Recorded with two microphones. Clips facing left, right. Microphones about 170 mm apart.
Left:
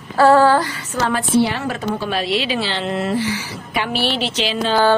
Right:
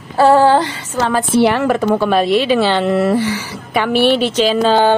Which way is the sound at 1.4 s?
65° right (ahead or behind).